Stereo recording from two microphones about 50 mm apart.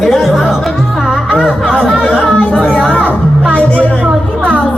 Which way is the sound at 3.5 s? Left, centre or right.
Left.